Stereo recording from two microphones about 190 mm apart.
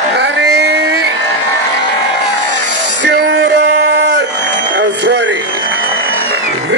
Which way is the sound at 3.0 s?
75° right (ahead or behind).